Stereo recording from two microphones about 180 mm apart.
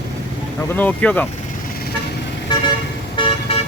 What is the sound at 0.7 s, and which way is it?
Speech, 10° left (ahead or behind).